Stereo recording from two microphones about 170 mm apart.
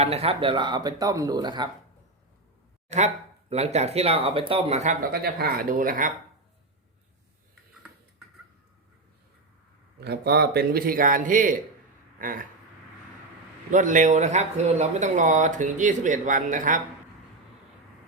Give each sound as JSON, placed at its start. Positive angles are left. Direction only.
{"t": 0.0, "sound": "speech", "side_deg": -35}
{"t": 2.9, "sound": "speech", "side_deg": -40}
{"t": 5.1, "sound": "a man's voice", "side_deg": -65}
{"t": 10.0, "sound": "a man's voice", "side_deg": -70}
{"t": 13.7, "sound": "speech", "side_deg": -50}